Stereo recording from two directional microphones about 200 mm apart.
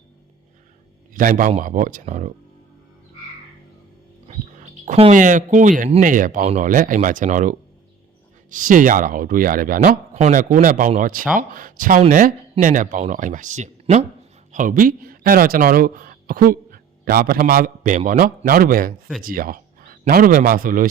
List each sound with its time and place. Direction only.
1.1 s speech: 45° right (ahead or behind)
4.3 s a man's voice: 40° right (ahead or behind)